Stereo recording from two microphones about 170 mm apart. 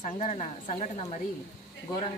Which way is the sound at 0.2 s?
40° left (ahead or behind).